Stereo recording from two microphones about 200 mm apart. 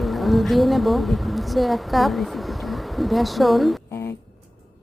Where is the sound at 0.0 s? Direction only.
Centre (ahead or behind).